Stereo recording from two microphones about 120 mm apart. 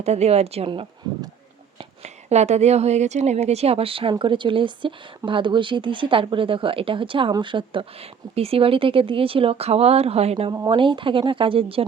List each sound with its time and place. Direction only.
0.0 s a woman's voice: 65° right (ahead or behind)
0.7 s a sound: 40° right (ahead or behind)
2.0 s a woman's voice: 70° right (ahead or behind)
10.7 s speech: 45° right (ahead or behind)